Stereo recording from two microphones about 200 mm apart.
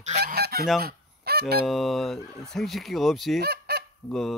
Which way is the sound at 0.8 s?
50° right (ahead or behind).